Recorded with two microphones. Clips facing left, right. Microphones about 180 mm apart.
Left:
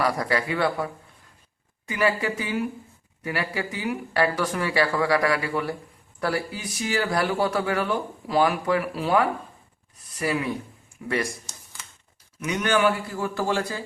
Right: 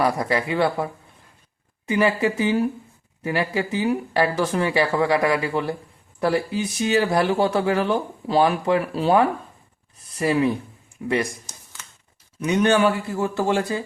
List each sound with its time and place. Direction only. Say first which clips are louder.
0.0 s speech: right 3 dB; 20° right (ahead or behind)
1.9 s speech: right 4 dB; 25° right (ahead or behind)
12.4 s speech: right 4 dB; 30° right (ahead or behind)